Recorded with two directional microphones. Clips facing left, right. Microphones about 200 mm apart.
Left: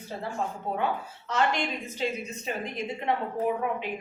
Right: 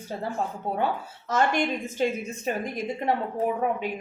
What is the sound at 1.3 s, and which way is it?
Speech, 45° right (ahead or behind).